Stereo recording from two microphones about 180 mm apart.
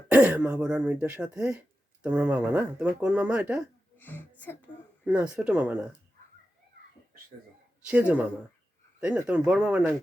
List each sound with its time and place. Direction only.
0.1 s speech: 10° right (ahead or behind)
3.9 s speech: 10° left (ahead or behind)
5.0 s speech: 5° right (ahead or behind)
7.9 s speech: 10° right (ahead or behind)